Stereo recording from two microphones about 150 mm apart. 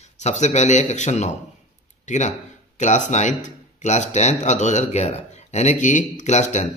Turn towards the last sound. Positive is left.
turn(degrees=50)  # may be behind; listen again after turning